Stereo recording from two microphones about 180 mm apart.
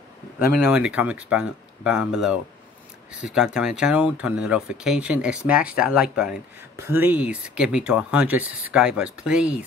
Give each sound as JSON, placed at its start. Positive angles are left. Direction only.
{"t": 0.4, "sound": "speech", "side_deg": 55}
{"t": 0.7, "sound": "speech", "side_deg": -5}